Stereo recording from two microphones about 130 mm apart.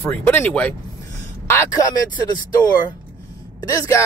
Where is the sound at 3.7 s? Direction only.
25° left (ahead or behind).